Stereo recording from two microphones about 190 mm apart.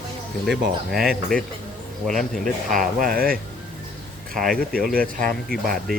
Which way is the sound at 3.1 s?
50° right (ahead or behind).